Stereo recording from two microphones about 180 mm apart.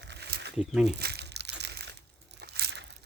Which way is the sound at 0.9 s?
65° right (ahead or behind).